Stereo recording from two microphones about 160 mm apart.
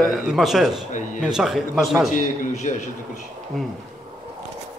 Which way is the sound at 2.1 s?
50° left (ahead or behind).